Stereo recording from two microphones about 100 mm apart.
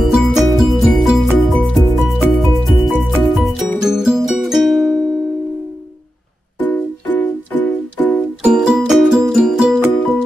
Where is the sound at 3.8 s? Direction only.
5° right (ahead or behind).